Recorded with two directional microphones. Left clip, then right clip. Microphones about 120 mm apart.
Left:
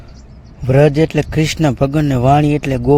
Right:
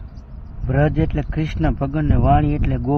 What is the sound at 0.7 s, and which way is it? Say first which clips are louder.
Speech: left 9 dB; 60° left (ahead or behind).